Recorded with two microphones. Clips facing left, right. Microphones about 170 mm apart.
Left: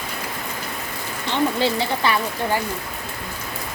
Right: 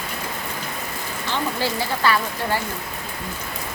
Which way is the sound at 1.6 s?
20° left (ahead or behind).